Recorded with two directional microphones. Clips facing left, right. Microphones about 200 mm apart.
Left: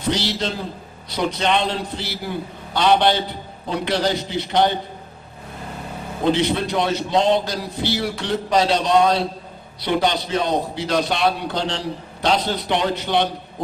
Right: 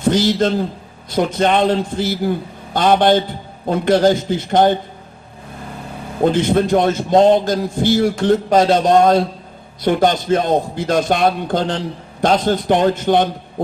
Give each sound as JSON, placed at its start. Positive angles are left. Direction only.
{"t": 0.0, "sound": "a man's voice", "side_deg": -50}
{"t": 6.2, "sound": "a man's voice", "side_deg": -50}